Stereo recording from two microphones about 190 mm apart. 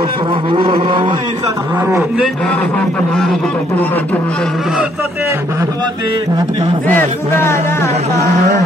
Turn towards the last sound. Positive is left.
turn(degrees=10)  # may be behind; listen again after turning